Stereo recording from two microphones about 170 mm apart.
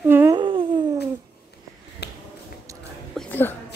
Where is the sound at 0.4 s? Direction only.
30° right (ahead or behind).